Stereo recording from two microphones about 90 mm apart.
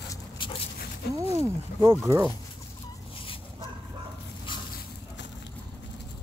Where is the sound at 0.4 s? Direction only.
75° left (ahead or behind).